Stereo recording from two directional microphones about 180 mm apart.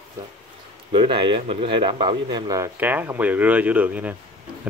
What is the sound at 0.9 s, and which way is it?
Speech, 25° right (ahead or behind).